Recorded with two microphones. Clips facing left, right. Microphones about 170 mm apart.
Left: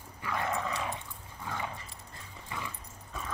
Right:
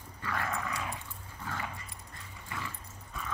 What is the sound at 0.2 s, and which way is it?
Dog, 20° left (ahead or behind).